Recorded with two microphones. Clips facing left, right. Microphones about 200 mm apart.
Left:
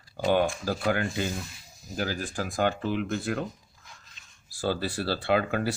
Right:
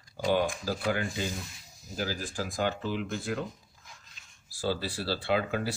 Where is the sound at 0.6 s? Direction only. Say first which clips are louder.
Left 3 dB; 55° left (ahead or behind).